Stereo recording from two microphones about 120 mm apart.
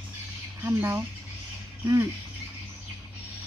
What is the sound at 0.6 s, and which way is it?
Speech, 20° right (ahead or behind).